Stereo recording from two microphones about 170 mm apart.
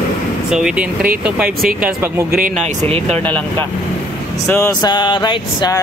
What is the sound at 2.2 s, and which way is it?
Speech, 60° right (ahead or behind).